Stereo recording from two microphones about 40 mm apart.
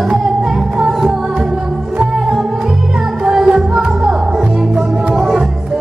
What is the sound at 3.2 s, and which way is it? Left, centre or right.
Music, centre.